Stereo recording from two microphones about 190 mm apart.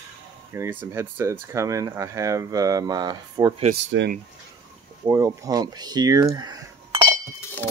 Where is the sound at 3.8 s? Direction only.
75° right (ahead or behind).